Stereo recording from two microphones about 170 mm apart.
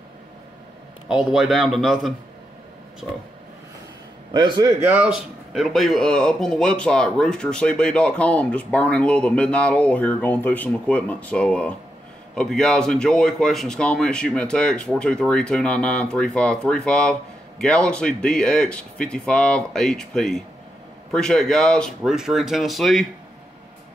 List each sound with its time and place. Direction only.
1.0 s speech: 5° right (ahead or behind)
4.3 s a man's voice: 25° right (ahead or behind)
4.8 s speech: 10° right (ahead or behind)